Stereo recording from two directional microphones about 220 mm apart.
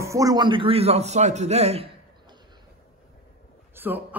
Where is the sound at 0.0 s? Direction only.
15° right (ahead or behind).